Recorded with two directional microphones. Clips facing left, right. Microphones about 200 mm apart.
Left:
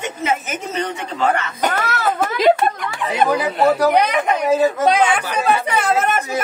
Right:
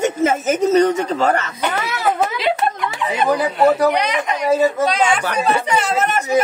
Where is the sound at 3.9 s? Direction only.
55° left (ahead or behind).